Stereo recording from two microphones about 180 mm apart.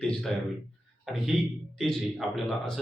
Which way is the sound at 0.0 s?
Centre (ahead or behind).